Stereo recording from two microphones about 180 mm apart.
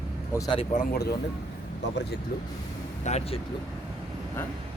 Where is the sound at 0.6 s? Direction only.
45° left (ahead or behind).